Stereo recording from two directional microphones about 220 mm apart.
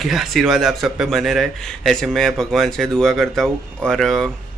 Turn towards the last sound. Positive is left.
turn(degrees=0)  # may be behind; listen again after turning